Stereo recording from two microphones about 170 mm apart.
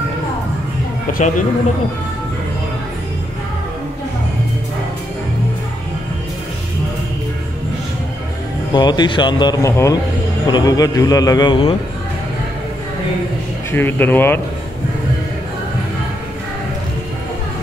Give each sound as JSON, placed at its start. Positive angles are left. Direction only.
{"t": 8.7, "sound": "a man's voice", "side_deg": 25}
{"t": 13.7, "sound": "speech", "side_deg": 10}